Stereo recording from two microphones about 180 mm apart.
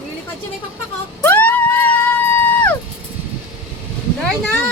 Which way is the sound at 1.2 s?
10° left (ahead or behind).